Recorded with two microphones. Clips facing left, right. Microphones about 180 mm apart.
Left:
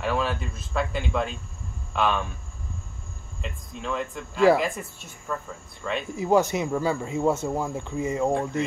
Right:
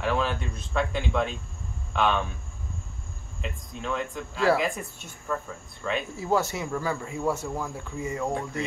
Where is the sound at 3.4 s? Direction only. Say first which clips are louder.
Even; centre (ahead or behind).